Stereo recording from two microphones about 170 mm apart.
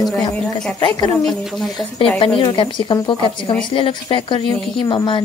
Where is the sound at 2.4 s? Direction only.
30° left (ahead or behind).